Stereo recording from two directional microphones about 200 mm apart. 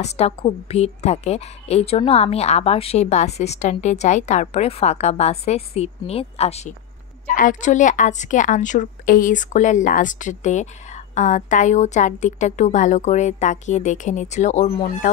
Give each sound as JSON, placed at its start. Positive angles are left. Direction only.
{"t": 0.0, "sound": "a woman's voice", "side_deg": 30}